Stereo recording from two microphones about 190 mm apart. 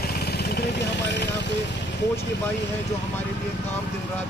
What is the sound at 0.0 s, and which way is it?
Vehicle, 55° left (ahead or behind).